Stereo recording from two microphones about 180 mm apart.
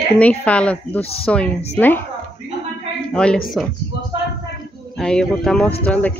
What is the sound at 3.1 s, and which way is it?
Speech, 5° left (ahead or behind).